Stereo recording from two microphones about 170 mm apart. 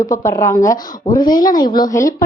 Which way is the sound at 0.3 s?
20° left (ahead or behind).